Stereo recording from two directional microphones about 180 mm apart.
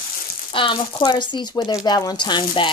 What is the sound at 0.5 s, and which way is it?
Speech, 30° left (ahead or behind).